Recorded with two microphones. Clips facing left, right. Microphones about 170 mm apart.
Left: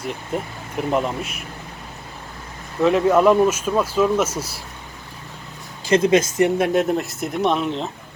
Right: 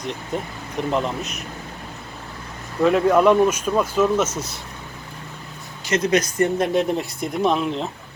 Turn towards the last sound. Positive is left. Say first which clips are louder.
# even
turn(degrees=0)  # may be behind; listen again after turning